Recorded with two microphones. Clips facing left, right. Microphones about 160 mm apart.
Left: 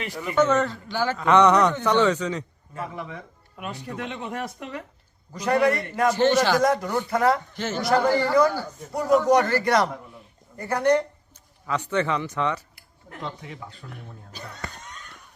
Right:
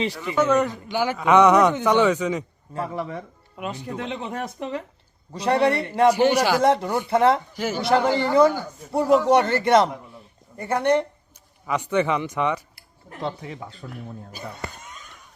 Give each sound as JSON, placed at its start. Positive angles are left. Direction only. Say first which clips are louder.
{"t": 0.3, "sound": "a man's voice", "louder": "right 1 dB", "side_deg": -10}
{"t": 2.7, "sound": "speech", "louder": "right 5 dB", "side_deg": -35}
{"t": 3.7, "sound": "a man's voice", "louder": "right 2 dB", "side_deg": -25}
{"t": 6.1, "sound": "a man's voice", "louder": "right 1 dB", "side_deg": -10}
{"t": 6.6, "sound": "a man's voice", "louder": "right 2 dB", "side_deg": -25}
{"t": 7.5, "sound": "a man's voice", "louder": "right 3 dB", "side_deg": -10}
{"t": 7.8, "sound": "a man's voice", "louder": "even", "side_deg": -25}
{"t": 11.6, "sound": "a man's voice", "louder": "right 3 dB", "side_deg": -15}
{"t": 13.2, "sound": "a man's voice", "louder": "right 6 dB", "side_deg": -30}
{"t": 13.9, "sound": "speech", "louder": "right 5 dB", "side_deg": -10}